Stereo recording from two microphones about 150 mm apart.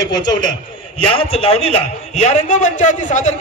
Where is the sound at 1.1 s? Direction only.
40° left (ahead or behind).